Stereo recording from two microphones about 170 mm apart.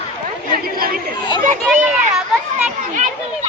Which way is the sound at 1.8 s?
10° right (ahead or behind).